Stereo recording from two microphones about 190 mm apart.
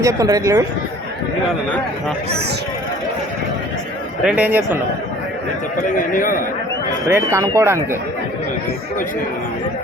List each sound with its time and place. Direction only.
0.0 s a man's voice: 15° right (ahead or behind)
4.2 s a man's voice: 5° right (ahead or behind)
5.9 s a man's voice: 45° left (ahead or behind)
7.1 s a man's voice: 15° right (ahead or behind)